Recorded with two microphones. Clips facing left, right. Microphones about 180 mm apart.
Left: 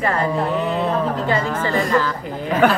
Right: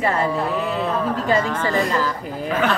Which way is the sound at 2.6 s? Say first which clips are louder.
Left 6 dB; 55° left (ahead or behind).